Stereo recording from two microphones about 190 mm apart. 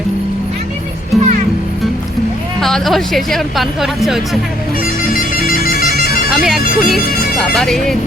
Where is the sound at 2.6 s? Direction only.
Centre (ahead or behind).